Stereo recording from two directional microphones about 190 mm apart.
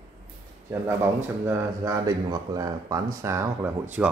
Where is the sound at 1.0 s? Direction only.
15° right (ahead or behind).